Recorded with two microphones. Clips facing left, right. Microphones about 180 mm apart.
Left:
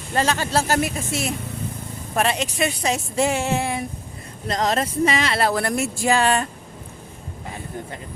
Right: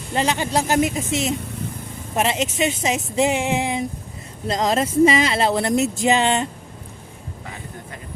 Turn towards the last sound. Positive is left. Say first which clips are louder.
# right 1 dB
turn(degrees=-20)  # may be behind; listen again after turning